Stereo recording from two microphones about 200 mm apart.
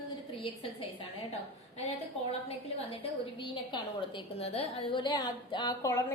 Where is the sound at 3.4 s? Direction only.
25° left (ahead or behind).